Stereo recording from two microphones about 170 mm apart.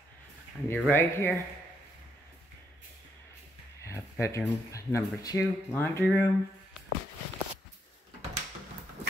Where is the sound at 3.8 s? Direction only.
15° left (ahead or behind).